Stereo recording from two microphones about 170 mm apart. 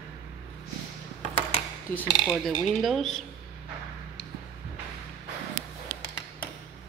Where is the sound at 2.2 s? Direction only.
5° left (ahead or behind).